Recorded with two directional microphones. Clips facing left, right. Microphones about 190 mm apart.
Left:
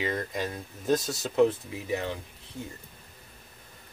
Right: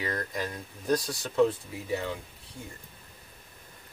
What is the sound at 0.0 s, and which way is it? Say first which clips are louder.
Speech: left 2 dB; 25° left (ahead or behind).